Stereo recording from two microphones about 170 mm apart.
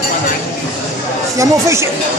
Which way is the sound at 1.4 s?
15° right (ahead or behind).